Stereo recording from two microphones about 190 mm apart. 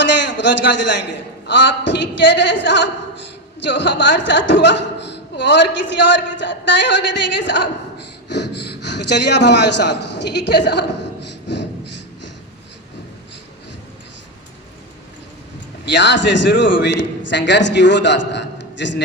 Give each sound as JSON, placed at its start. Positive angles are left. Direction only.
{"t": 0.0, "sound": "a sound", "side_deg": 65}
{"t": 1.5, "sound": "speech", "side_deg": 65}
{"t": 15.9, "sound": "speech", "side_deg": 65}